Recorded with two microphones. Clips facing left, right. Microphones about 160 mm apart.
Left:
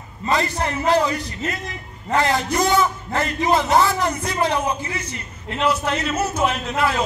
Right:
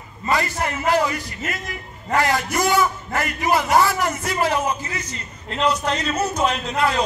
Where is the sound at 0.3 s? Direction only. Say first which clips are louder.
Left 1 dB; 25° left (ahead or behind); by 6.6 s 5° left (ahead or behind).